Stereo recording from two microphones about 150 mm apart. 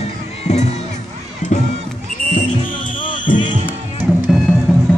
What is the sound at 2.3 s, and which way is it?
Music, 60° left (ahead or behind).